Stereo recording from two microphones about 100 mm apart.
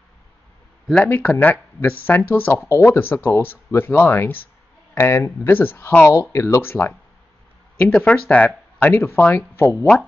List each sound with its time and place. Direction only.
1.0 s speech: 20° left (ahead or behind)
7.8 s speech: 10° left (ahead or behind)